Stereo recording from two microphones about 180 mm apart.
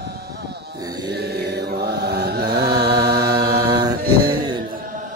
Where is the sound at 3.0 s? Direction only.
20° right (ahead or behind).